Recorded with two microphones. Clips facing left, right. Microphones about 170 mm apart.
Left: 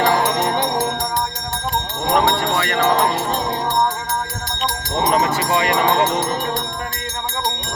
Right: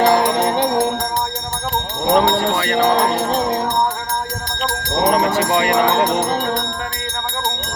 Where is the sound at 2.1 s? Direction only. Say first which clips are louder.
Right 2 dB; 35° right (ahead or behind).